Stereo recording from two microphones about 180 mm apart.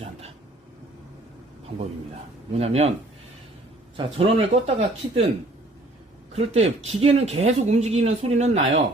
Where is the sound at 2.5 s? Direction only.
35° right (ahead or behind).